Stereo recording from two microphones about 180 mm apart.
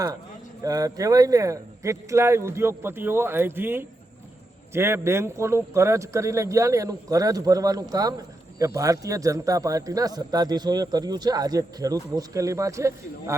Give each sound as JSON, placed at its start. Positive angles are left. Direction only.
{"t": 0.6, "sound": "a man's voice", "side_deg": -20}